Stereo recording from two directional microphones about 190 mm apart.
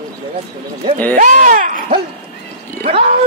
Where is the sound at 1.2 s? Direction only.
40° right (ahead or behind).